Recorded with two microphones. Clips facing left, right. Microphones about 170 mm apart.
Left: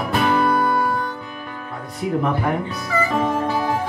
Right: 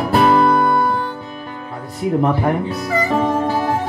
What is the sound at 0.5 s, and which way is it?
Music, 55° right (ahead or behind).